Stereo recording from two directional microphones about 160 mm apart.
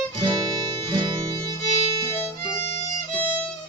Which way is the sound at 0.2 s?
30° right (ahead or behind).